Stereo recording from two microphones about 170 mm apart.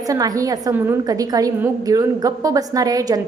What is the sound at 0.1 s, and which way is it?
A woman's voice, 20° right (ahead or behind).